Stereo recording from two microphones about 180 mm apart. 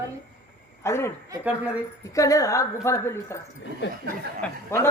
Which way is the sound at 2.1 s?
20° left (ahead or behind).